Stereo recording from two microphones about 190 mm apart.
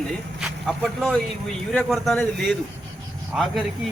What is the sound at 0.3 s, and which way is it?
Speech, centre (ahead or behind).